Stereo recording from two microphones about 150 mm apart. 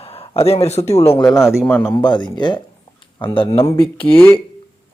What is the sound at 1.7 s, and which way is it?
Speech, 15° left (ahead or behind).